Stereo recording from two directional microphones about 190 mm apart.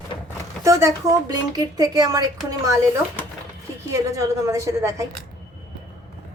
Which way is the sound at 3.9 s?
15° right (ahead or behind).